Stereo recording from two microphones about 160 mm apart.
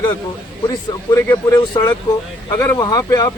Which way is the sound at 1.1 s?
15° left (ahead or behind).